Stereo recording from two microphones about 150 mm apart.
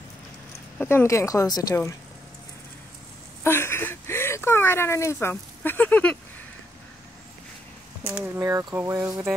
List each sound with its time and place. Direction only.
0.7 s speech: 15° left (ahead or behind)
3.4 s speech: 15° left (ahead or behind)
8.0 s speech: 15° right (ahead or behind)